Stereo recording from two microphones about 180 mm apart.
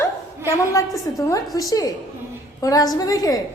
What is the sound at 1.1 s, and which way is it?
A woman's voice, 20° left (ahead or behind).